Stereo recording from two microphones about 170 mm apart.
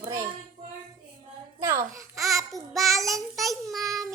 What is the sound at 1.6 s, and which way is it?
A child's voice, 20° right (ahead or behind).